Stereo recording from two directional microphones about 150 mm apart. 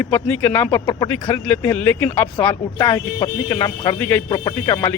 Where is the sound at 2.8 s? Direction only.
25° left (ahead or behind).